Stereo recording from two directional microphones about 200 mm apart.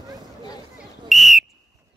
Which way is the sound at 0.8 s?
Centre (ahead or behind).